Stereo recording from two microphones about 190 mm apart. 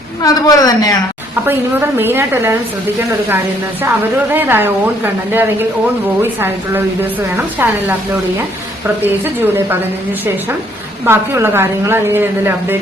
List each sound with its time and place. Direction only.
0.2 s a woman's voice: 20° left (ahead or behind)
1.5 s a woman's voice: 10° right (ahead or behind)
4.4 s a woman's voice: 10° right (ahead or behind)
7.6 s a woman's voice: 10° right (ahead or behind)
9.0 s a woman's voice: 10° right (ahead or behind)
11.0 s a woman's voice: 15° right (ahead or behind)